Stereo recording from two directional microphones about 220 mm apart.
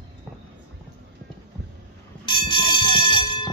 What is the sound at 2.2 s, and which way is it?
Fire alarm, 20° left (ahead or behind).